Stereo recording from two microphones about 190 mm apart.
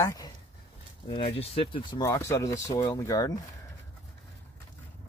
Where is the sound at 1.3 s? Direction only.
30° left (ahead or behind).